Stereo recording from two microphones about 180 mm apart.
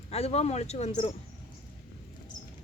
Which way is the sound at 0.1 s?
35° left (ahead or behind).